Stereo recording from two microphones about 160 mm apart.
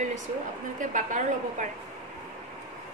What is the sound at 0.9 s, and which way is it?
Speech, 50° right (ahead or behind).